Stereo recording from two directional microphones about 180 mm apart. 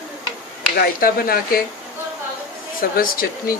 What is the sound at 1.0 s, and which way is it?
Speech, 55° left (ahead or behind).